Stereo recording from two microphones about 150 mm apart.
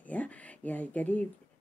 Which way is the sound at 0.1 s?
10° left (ahead or behind).